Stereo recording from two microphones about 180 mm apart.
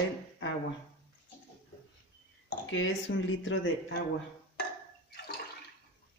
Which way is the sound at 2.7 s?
90° left.